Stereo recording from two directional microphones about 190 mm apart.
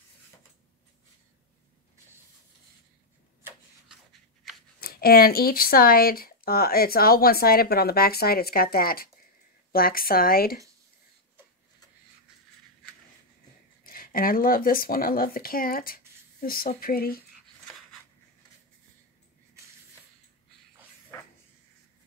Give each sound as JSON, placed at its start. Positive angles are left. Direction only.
{"t": 3.4, "sound": "rub", "side_deg": 0}
{"t": 4.7, "sound": "speech", "side_deg": 50}
{"t": 13.8, "sound": "speech", "side_deg": 50}